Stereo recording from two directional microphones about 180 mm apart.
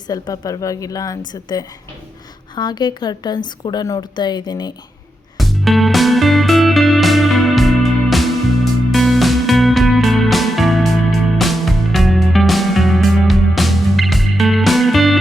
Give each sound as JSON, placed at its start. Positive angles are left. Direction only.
{"t": 0.1, "sound": "a woman's voice", "side_deg": 20}
{"t": 5.4, "sound": "music", "side_deg": 0}